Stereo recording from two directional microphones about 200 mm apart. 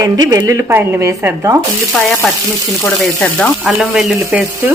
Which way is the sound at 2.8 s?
5° left (ahead or behind).